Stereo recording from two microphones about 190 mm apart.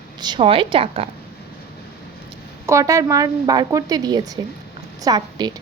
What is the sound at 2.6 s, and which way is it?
A woman's voice, 15° right (ahead or behind).